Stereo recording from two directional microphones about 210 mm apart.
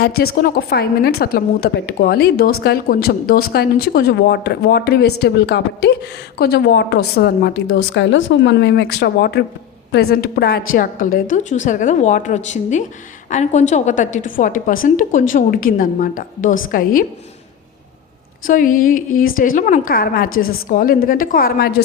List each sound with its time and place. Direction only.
0.0 s a woman's voice: 45° left (ahead or behind)
18.4 s a woman's voice: 40° left (ahead or behind)